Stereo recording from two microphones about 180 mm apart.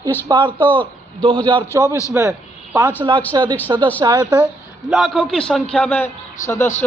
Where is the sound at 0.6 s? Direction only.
10° left (ahead or behind).